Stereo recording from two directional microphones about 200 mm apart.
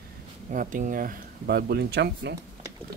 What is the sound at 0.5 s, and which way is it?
Speech, 40° right (ahead or behind).